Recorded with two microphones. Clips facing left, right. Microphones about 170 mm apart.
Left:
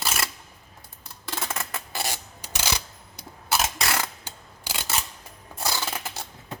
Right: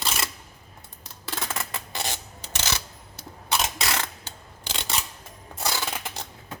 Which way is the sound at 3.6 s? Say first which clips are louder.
Left 1 dB; 5° left (ahead or behind).